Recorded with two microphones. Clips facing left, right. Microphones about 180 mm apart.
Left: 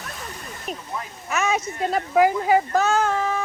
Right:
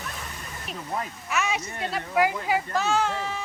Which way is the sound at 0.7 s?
45° left (ahead or behind).